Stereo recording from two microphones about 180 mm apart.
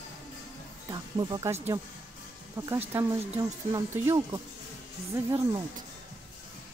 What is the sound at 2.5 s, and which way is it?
Speech, 15° right (ahead or behind).